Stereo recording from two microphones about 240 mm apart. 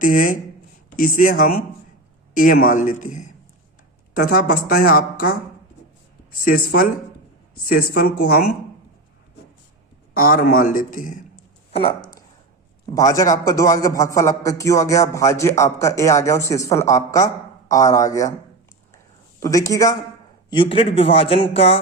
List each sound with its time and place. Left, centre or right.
0.0 s a woman's voice: left
6.4 s a woman's voice: left
10.2 s a woman's voice: left
11.7 s a man's voice: left
19.4 s a man's voice: centre